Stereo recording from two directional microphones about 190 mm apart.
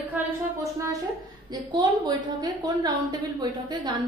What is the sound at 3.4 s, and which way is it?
Speech, 25° right (ahead or behind).